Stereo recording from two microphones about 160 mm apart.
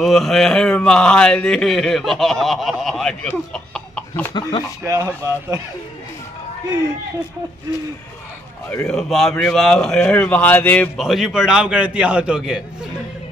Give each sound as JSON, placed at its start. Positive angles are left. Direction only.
{"t": 0.0, "sound": "speech", "side_deg": 0}
{"t": 4.3, "sound": "speech", "side_deg": 25}
{"t": 4.8, "sound": "speech", "side_deg": -20}
{"t": 8.8, "sound": "speech", "side_deg": 0}
{"t": 11.0, "sound": "speech", "side_deg": 0}